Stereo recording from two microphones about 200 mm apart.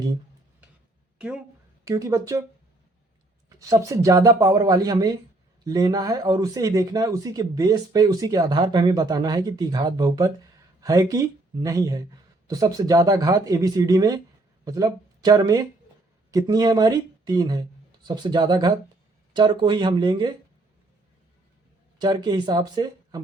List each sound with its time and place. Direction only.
1.8 s speech: 15° right (ahead or behind)
3.7 s speech: 15° right (ahead or behind)
21.9 s speech: 20° right (ahead or behind)